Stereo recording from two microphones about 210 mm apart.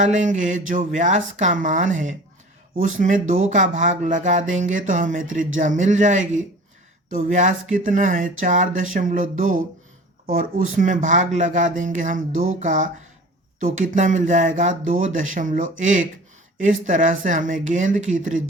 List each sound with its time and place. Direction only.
0.0 s speech: 35° right (ahead or behind)